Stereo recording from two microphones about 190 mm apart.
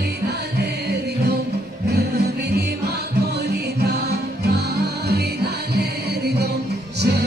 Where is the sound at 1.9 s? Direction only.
60° right (ahead or behind).